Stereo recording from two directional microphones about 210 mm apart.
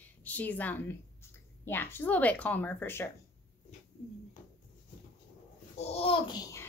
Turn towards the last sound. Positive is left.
turn(degrees=20)  # may be behind; listen again after turning